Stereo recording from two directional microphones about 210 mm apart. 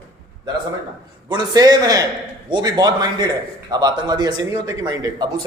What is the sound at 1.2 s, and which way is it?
A man's voice, 20° right (ahead or behind).